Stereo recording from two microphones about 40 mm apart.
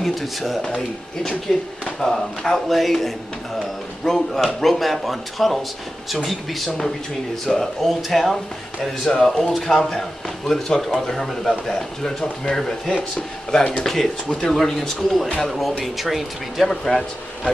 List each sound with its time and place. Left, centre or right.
0.0 s speech: centre
15.8 s speech: centre
16.6 s speech: centre